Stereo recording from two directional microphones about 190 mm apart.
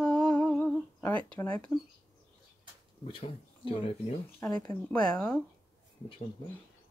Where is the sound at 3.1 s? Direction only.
30° left (ahead or behind).